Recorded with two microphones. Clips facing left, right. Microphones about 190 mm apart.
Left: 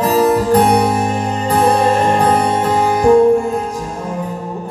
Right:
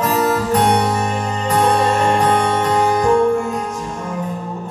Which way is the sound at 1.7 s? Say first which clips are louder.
Left 3 dB; 30° left (ahead or behind).